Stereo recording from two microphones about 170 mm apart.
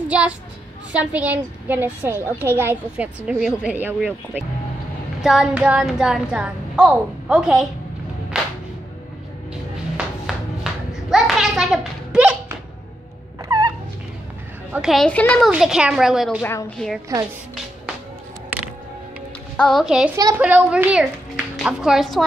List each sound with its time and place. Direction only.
0.1 s a woman's voice: 5° right (ahead or behind)
8.3 s music: centre (ahead or behind)
9.9 s a sound: 5° right (ahead or behind)
13.5 s a sound: 25° right (ahead or behind)
14.7 s a woman's voice: centre (ahead or behind)
15.5 s a woman's voice: 5° right (ahead or behind)
19.5 s a woman's voice: 5° left (ahead or behind)